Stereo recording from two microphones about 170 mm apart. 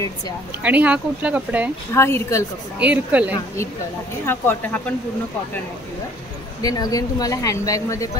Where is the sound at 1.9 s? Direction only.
15° left (ahead or behind).